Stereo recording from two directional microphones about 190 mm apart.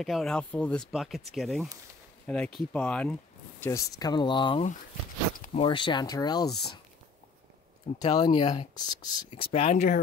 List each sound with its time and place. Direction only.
0.0 s speech: centre (ahead or behind)
3.6 s speech: 15° left (ahead or behind)
8.0 s speech: 20° left (ahead or behind)